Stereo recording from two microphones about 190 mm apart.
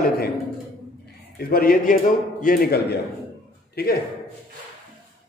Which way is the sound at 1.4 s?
50° left (ahead or behind).